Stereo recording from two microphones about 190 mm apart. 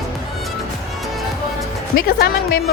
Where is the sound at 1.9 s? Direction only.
50° left (ahead or behind).